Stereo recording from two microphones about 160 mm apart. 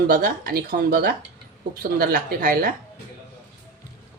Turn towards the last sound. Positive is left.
turn(degrees=-60)  # may be behind; listen again after turning